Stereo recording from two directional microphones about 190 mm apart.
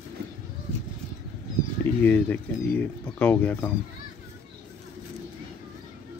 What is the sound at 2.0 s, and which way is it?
Speech, 10° left (ahead or behind).